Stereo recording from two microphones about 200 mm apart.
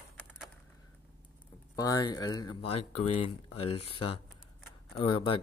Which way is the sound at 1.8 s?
20° left (ahead or behind).